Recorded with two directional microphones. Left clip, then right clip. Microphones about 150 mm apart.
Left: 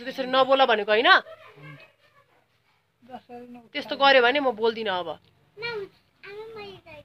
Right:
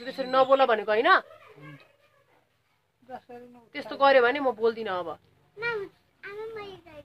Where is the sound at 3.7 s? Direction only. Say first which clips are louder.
Left 2 dB; 10° left (ahead or behind).